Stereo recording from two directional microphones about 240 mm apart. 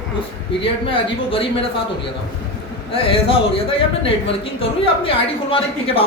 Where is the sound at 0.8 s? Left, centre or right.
Left.